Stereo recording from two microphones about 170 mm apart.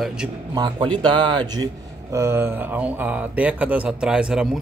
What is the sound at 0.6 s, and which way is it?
Speech, 25° right (ahead or behind).